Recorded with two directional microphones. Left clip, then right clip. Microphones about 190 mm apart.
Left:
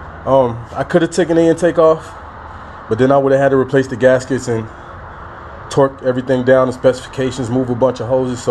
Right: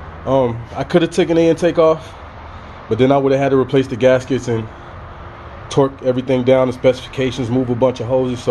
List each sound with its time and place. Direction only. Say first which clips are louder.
0.2 s speech: left 3 dB; centre (ahead or behind)
4.2 s speech: left 1 dB; 35° left (ahead or behind)
5.7 s speech: left 2 dB; centre (ahead or behind)